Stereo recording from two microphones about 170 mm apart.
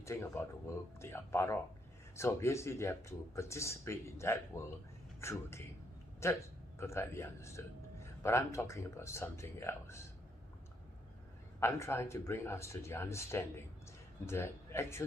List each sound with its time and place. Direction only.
0.0 s a man's voice: 15° left (ahead or behind)
11.6 s a man's voice: 15° left (ahead or behind)